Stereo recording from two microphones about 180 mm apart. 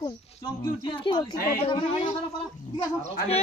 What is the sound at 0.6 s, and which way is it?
Speech, 25° left (ahead or behind).